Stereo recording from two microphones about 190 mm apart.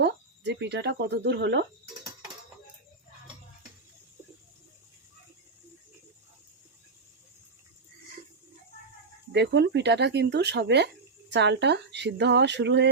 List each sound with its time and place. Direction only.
0.0 s speech: 65° right (ahead or behind)
9.3 s speech: 65° right (ahead or behind)